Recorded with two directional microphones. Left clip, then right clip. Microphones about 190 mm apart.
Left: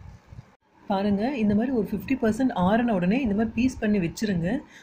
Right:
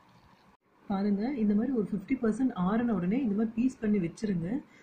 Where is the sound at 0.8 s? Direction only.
30° left (ahead or behind).